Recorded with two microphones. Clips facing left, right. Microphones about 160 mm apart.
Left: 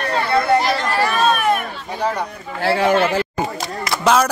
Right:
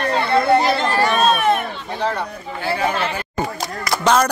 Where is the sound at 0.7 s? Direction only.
25° right (ahead or behind).